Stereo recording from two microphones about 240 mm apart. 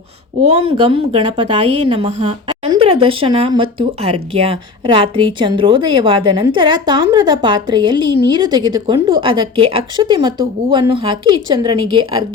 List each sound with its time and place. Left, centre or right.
0.4 s speech: right